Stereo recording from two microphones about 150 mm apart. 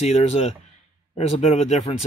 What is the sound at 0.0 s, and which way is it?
Speech, 45° left (ahead or behind).